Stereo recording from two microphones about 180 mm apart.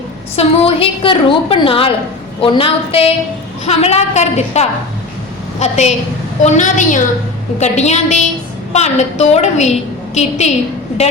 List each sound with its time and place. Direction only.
0.3 s a woman's voice: 30° left (ahead or behind)